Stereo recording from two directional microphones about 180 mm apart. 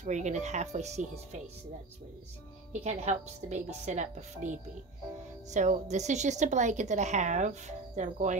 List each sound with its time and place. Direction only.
0.0 s a woman's voice: 40° right (ahead or behind)
2.7 s a woman's voice: 35° right (ahead or behind)